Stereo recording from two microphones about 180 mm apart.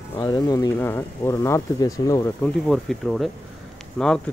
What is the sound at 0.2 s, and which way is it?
Speech, 20° left (ahead or behind).